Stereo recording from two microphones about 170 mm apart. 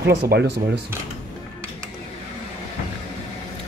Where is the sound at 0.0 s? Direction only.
75° right (ahead or behind).